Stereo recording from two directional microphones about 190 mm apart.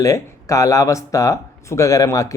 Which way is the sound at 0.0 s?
15° left (ahead or behind).